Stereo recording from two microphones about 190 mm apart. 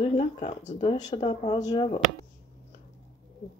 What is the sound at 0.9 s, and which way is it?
Speech, 20° left (ahead or behind).